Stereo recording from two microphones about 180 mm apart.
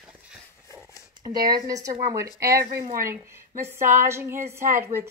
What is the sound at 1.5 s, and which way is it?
A woman's voice, 20° right (ahead or behind).